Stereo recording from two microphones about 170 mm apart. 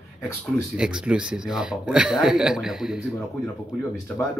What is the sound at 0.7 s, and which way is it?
Speech, 5° right (ahead or behind).